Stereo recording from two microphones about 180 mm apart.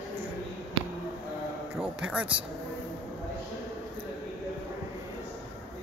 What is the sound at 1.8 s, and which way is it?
Speech, 5° right (ahead or behind).